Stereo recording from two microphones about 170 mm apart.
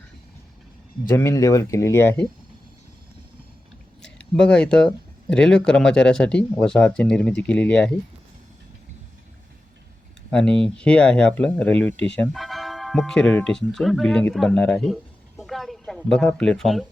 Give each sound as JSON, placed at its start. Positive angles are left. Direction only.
{"t": 1.0, "sound": "speech", "side_deg": 15}
{"t": 4.0, "sound": "speech", "side_deg": 5}
{"t": 10.3, "sound": "speech", "side_deg": 5}
{"t": 15.4, "sound": "a sound", "side_deg": 0}